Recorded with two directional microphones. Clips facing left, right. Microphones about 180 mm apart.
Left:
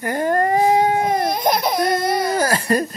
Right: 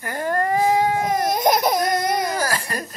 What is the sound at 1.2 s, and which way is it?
Baby cry, 45° right (ahead or behind).